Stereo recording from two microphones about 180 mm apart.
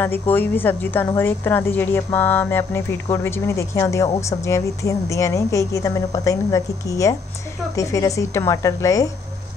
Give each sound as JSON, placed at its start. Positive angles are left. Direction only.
{"t": 0.0, "sound": "a woman's voice", "side_deg": 10}